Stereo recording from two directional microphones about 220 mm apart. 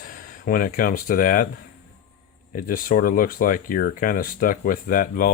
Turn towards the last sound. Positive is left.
turn(degrees=40)  # may be behind; listen again after turning